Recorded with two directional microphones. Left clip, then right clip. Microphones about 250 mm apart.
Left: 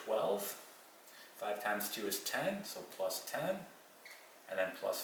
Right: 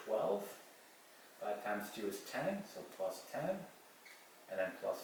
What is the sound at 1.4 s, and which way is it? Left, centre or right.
Speech, centre.